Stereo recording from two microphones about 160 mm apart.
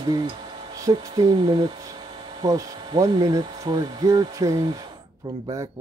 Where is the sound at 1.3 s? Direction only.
30° right (ahead or behind).